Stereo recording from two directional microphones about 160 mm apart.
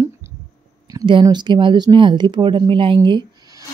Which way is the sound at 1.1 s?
30° right (ahead or behind).